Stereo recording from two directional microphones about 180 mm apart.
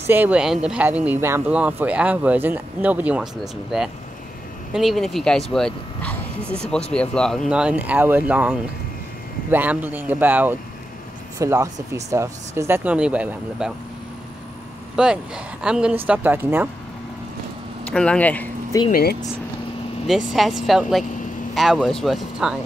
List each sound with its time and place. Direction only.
0.0 s speech: 10° right (ahead or behind)
15.0 s speech: 5° right (ahead or behind)
17.8 s speech: 5° left (ahead or behind)
18.9 s speech: 55° left (ahead or behind)
20.1 s speech: centre (ahead or behind)